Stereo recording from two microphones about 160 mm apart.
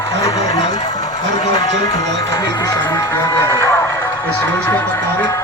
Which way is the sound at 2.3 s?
25° left (ahead or behind).